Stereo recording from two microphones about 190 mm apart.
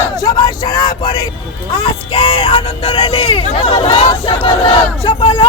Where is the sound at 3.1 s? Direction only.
35° left (ahead or behind).